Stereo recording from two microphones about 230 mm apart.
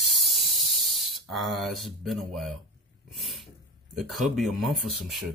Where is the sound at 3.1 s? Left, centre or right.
Centre.